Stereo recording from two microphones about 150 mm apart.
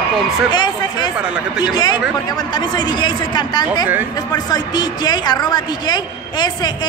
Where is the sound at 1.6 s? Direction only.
30° left (ahead or behind).